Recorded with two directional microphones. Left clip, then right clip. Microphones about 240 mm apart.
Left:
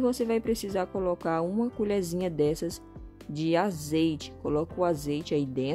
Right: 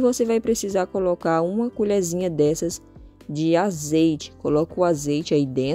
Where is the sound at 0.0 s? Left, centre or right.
Centre.